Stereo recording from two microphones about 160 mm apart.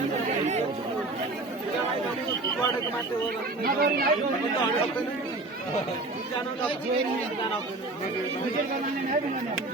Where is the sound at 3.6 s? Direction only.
65° right (ahead or behind).